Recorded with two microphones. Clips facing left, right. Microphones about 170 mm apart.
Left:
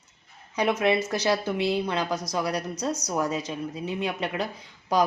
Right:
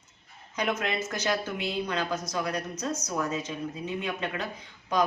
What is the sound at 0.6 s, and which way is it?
Speech, 30° left (ahead or behind).